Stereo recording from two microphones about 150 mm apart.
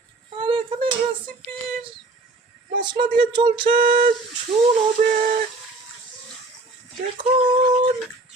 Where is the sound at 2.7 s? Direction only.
30° right (ahead or behind).